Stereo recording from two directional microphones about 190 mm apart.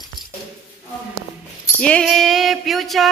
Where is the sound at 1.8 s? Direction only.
5° left (ahead or behind).